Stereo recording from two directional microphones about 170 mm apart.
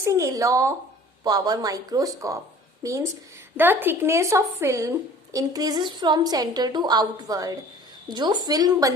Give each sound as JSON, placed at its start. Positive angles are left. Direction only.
{"t": 0.0, "sound": "a woman's voice", "side_deg": -15}